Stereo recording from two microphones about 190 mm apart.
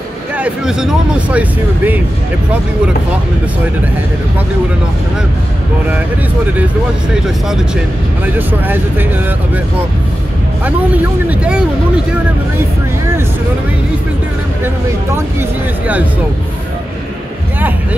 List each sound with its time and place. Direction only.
0.4 s speech: 5° right (ahead or behind)
7.4 s speech: 5° right (ahead or behind)
11.2 s speech: 5° right (ahead or behind)